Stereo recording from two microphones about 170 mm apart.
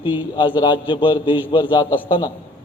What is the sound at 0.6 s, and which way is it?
A man's voice, 30° left (ahead or behind).